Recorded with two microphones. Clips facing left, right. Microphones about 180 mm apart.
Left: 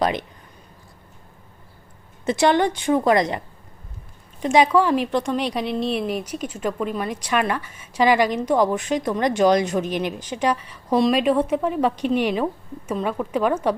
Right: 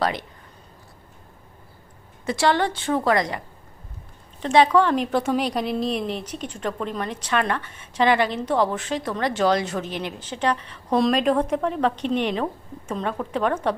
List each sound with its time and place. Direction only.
0.0 s a woman's voice: 20° left (ahead or behind)
2.2 s a woman's voice: 20° left (ahead or behind)
5.1 s a woman's voice: 5° right (ahead or behind)